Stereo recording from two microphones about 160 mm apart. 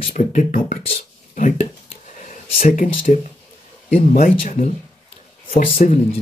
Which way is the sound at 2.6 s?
55° left (ahead or behind).